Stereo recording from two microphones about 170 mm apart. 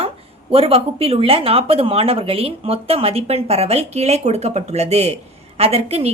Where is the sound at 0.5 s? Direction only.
35° right (ahead or behind).